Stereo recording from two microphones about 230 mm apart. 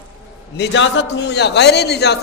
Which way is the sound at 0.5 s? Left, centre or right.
Left.